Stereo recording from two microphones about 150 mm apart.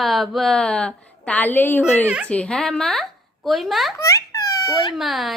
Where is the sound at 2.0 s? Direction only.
10° right (ahead or behind).